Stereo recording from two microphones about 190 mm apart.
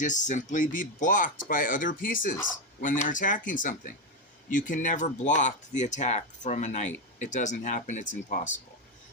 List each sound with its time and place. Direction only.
0.0 s speech: 40° left (ahead or behind)